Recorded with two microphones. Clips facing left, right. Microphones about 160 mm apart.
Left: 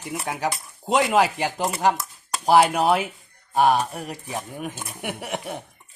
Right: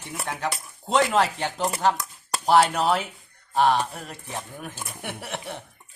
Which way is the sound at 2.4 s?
10° left (ahead or behind).